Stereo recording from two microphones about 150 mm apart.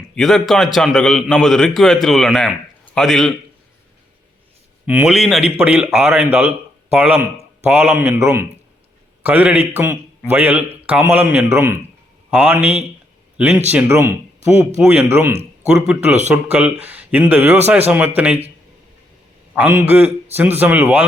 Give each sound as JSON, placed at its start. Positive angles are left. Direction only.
{"t": 0.2, "sound": "a man's voice", "side_deg": 0}
{"t": 4.9, "sound": "a man's voice", "side_deg": -5}
{"t": 19.5, "sound": "a man's voice", "side_deg": -10}